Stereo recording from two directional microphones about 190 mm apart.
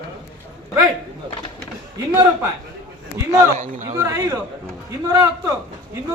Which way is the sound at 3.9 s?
15° right (ahead or behind).